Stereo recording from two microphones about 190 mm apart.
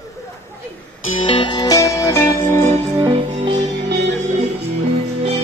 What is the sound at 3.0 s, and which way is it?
Music, 30° right (ahead or behind).